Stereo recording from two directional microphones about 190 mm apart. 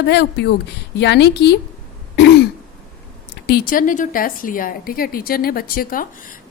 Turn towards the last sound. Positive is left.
turn(degrees=45)  # may be behind; listen again after turning